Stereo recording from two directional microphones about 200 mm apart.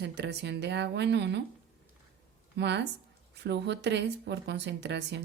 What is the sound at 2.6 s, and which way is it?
A woman's voice, 60° right (ahead or behind).